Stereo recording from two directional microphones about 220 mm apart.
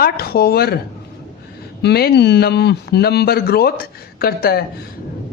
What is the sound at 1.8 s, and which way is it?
A woman's voice, 45° left (ahead or behind).